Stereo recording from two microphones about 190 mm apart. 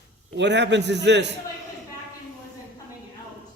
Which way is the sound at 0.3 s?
65° right (ahead or behind).